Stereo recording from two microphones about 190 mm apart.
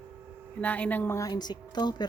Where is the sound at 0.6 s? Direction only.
5° left (ahead or behind).